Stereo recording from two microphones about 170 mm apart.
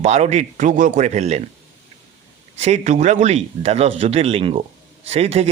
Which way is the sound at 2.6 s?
40° right (ahead or behind).